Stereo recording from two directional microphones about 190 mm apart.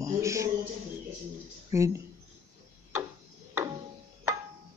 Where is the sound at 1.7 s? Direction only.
15° right (ahead or behind).